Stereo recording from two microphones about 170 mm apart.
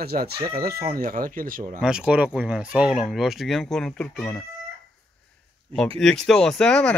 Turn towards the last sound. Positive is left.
turn(degrees=5)  # may be behind; listen again after turning